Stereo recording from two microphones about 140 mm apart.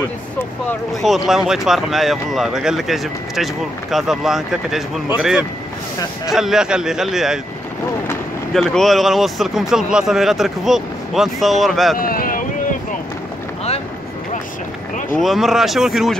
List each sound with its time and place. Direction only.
1.0 s speech: centre (ahead or behind)
6.3 s speech: 5° right (ahead or behind)
8.5 s speech: centre (ahead or behind)
12.0 s boat: 90° left
15.1 s speech: centre (ahead or behind)